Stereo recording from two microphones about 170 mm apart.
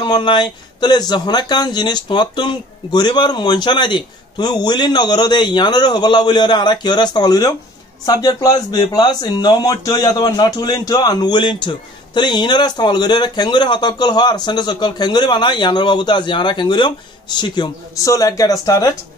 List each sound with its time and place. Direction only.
0.0 s speech: 25° left (ahead or behind)